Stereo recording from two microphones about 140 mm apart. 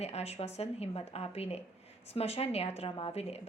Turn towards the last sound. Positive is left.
turn(degrees=45)  # may be behind; listen again after turning